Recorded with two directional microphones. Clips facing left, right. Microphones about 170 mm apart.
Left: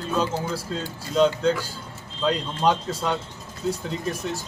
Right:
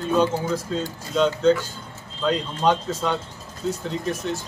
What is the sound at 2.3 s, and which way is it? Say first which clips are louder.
Speech: right 1 dB; 5° left (ahead or behind).